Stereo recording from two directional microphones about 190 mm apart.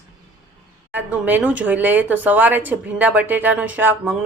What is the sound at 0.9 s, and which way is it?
Speech, 10° right (ahead or behind).